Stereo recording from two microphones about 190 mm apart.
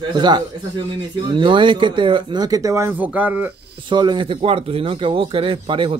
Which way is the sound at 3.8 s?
25° right (ahead or behind).